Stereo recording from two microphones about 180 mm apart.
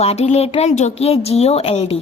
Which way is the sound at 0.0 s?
35° left (ahead or behind).